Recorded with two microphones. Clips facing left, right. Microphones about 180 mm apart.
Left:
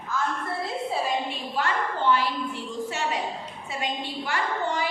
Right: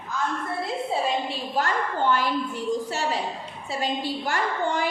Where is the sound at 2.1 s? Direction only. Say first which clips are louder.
Right 1 dB; 45° right (ahead or behind).